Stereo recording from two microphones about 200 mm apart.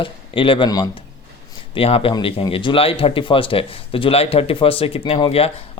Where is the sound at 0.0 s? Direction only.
25° left (ahead or behind).